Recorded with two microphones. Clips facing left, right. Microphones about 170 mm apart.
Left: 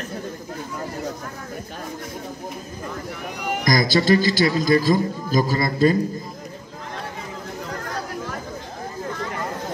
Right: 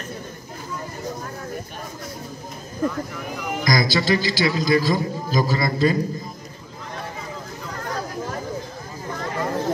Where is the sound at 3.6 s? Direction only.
50° left (ahead or behind).